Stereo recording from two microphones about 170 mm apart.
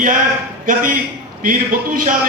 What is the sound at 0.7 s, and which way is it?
A man's voice, 55° right (ahead or behind).